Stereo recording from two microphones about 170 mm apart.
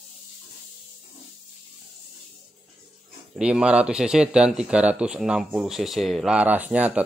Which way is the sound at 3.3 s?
5° right (ahead or behind).